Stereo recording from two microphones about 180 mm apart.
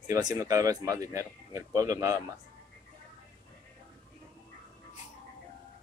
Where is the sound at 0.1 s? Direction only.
20° right (ahead or behind).